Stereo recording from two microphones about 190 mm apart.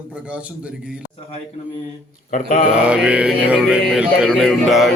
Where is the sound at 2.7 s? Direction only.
5° right (ahead or behind).